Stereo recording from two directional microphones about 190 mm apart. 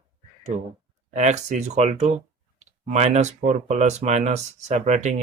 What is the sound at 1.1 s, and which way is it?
Speech, 40° right (ahead or behind).